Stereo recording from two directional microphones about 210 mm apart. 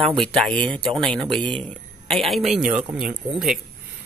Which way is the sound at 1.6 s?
5° left (ahead or behind).